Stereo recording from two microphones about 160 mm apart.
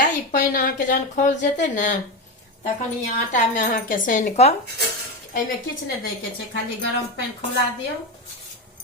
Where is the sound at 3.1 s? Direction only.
50° left (ahead or behind).